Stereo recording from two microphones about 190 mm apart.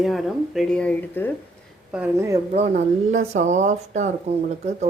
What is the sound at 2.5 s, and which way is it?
Speech, 35° right (ahead or behind).